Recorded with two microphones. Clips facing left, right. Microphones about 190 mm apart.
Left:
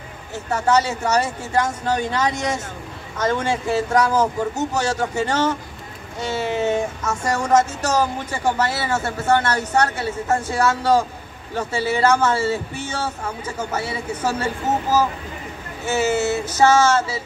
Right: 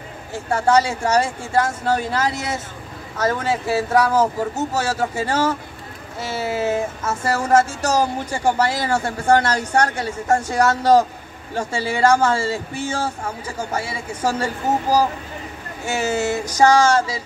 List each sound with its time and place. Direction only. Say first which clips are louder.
0.3 s speech: right 2 dB; 10° right (ahead or behind)